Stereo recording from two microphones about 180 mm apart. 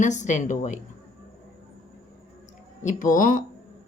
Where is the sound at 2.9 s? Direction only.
45° left (ahead or behind).